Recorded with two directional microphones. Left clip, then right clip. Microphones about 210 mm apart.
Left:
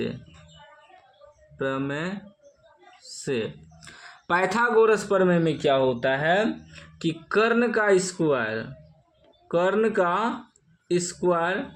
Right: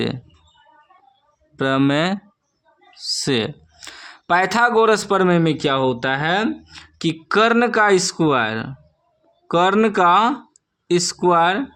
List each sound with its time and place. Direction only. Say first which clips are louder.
1.5 s speech: right 10 dB; 40° right (ahead or behind)